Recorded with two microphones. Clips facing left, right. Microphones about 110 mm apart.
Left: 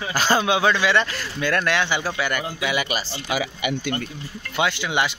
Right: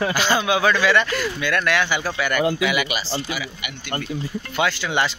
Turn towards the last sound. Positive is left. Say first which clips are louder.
# right 1 dB
turn(degrees=15)  # may be behind; listen again after turning